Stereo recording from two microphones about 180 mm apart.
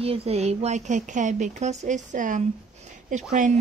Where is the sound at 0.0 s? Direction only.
35° right (ahead or behind).